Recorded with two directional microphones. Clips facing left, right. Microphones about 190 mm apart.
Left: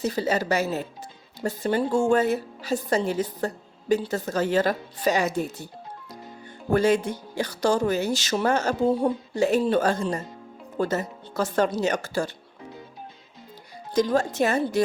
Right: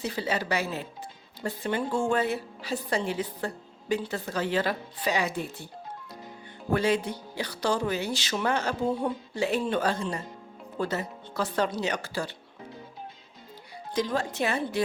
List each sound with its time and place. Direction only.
0.0 s a woman's voice: 40° left (ahead or behind)
6.7 s a woman's voice: 45° left (ahead or behind)
13.9 s a woman's voice: 45° left (ahead or behind)